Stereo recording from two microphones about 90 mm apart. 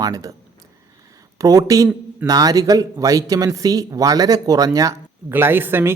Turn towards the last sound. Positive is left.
turn(degrees=-25)  # may be behind; listen again after turning